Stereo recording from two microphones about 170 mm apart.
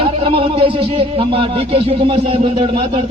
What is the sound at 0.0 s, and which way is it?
Speech, 30° right (ahead or behind).